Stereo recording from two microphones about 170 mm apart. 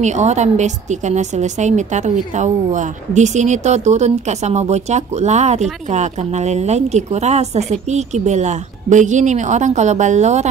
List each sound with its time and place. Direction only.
0.0 s a woman's voice: 40° right (ahead or behind)